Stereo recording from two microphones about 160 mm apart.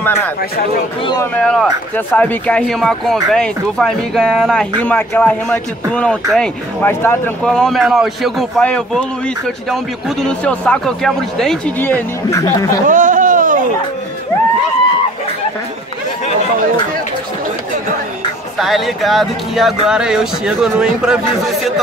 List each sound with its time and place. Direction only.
1.2 s speech: 5° left (ahead or behind)
11.8 s speech: 15° left (ahead or behind)
12.8 s a sound: 55° right (ahead or behind)
18.6 s speech: centre (ahead or behind)